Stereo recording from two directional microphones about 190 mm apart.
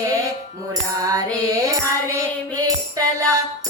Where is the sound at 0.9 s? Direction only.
20° right (ahead or behind).